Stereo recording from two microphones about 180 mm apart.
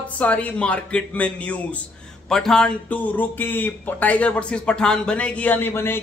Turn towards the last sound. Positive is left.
turn(degrees=15)  # may be behind; listen again after turning